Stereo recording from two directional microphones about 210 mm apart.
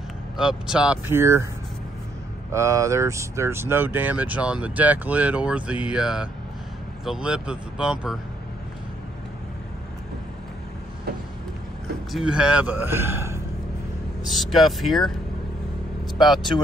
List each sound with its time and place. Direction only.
0.4 s speech: 5° right (ahead or behind)
2.5 s speech: 15° right (ahead or behind)
12.1 s speech: centre (ahead or behind)
14.2 s speech: centre (ahead or behind)